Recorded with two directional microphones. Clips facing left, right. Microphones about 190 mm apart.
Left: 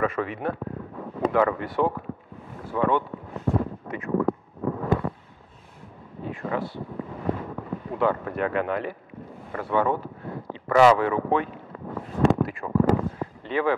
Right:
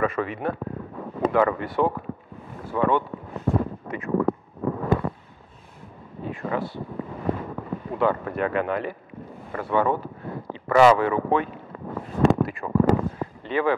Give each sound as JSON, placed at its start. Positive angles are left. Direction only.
{"t": 0.0, "sound": "speech", "side_deg": -15}
{"t": 0.6, "sound": "speech", "side_deg": -25}
{"t": 2.5, "sound": "boat", "side_deg": -15}
{"t": 3.0, "sound": "a sound", "side_deg": -20}
{"t": 6.2, "sound": "speech", "side_deg": -15}
{"t": 12.4, "sound": "a sound", "side_deg": -15}